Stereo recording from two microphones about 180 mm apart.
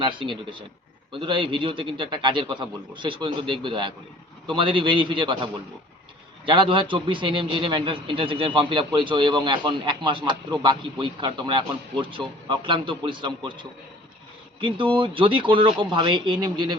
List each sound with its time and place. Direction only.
0.0 s a man's voice: 25° right (ahead or behind)
6.5 s a man's voice: 30° right (ahead or behind)